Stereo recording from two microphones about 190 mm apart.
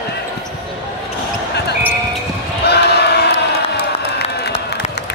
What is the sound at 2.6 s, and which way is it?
Basketball bounce, 60° left (ahead or behind).